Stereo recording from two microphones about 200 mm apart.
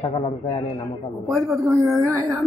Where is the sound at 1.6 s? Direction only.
15° right (ahead or behind).